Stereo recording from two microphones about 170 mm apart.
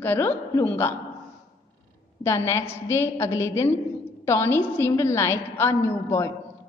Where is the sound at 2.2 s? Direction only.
15° left (ahead or behind).